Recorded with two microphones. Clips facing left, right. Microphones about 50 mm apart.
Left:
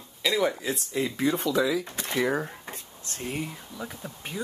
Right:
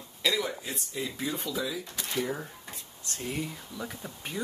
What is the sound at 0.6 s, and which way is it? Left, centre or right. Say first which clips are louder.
Speech: left 7 dB; left.